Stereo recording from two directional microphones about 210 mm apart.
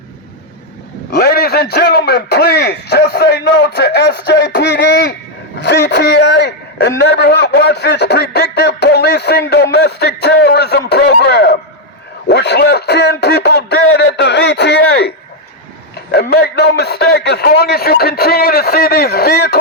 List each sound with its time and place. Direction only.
1.1 s a man's voice: 50° left (ahead or behind)
12.3 s a sound: 55° left (ahead or behind)
16.1 s a man's voice: 50° left (ahead or behind)